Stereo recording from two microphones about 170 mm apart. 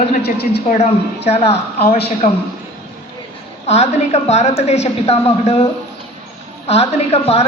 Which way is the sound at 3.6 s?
40° left (ahead or behind).